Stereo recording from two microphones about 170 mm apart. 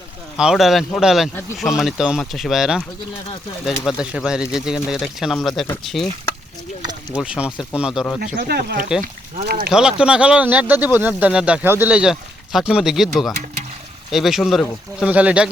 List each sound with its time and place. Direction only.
0.3 s speech: 5° right (ahead or behind)
7.2 s speech: 5° right (ahead or behind)
8.4 s speech: 65° right (ahead or behind)
9.6 s speech: 5° right (ahead or behind)